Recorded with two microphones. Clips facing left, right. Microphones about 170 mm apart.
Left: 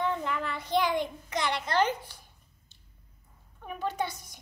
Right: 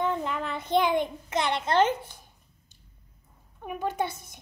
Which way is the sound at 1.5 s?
25° right (ahead or behind).